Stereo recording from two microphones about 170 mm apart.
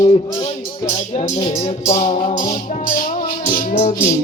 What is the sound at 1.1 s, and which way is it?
Music, 35° left (ahead or behind).